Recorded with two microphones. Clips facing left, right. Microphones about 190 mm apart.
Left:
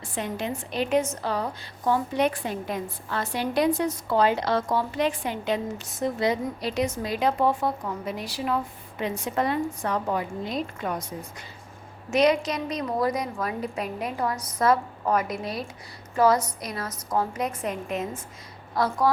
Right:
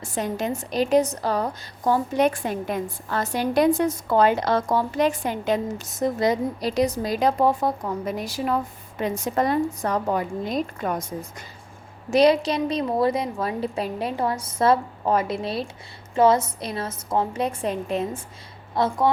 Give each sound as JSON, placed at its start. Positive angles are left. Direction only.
{"t": 0.0, "sound": "a woman's voice", "side_deg": -45}
{"t": 12.1, "sound": "a woman's voice", "side_deg": -30}